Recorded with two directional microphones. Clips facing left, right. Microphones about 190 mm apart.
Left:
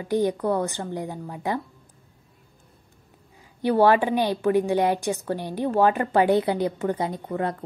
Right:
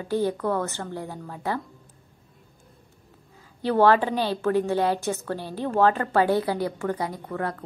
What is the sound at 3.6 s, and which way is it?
A woman's voice, 15° left (ahead or behind).